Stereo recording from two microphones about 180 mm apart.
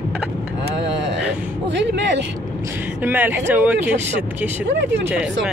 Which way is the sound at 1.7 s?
80° right.